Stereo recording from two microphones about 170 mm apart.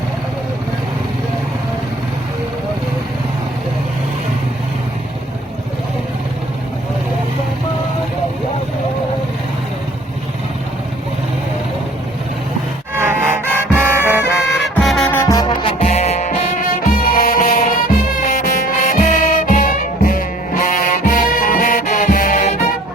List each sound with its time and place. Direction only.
13.0 s music: 10° right (ahead or behind)
14.8 s music: centre (ahead or behind)
15.1 s music: 10° left (ahead or behind)
15.4 s music: 25° left (ahead or behind)
15.8 s music: 40° left (ahead or behind)